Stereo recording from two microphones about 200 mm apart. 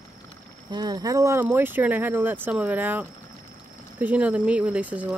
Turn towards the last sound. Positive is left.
turn(degrees=-5)  # may be behind; listen again after turning